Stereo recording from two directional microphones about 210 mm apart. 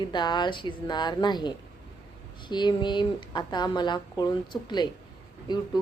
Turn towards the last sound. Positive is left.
turn(degrees=20)  # may be behind; listen again after turning